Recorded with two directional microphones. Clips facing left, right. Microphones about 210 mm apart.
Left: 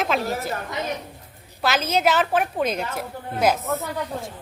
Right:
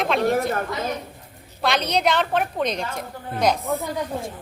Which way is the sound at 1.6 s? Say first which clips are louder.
Even; 5° left (ahead or behind).